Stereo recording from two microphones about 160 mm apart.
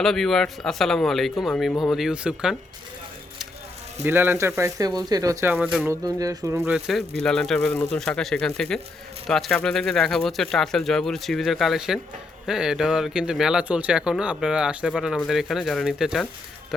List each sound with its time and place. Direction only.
0.0 s a man's voice: centre (ahead or behind)
4.0 s speech: 15° right (ahead or behind)
5.5 s speech: 5° right (ahead or behind)
5.9 s speech: 20° right (ahead or behind)
6.7 s a man's voice: centre (ahead or behind)